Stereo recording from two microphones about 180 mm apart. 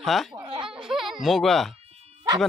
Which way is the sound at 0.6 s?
5° right (ahead or behind).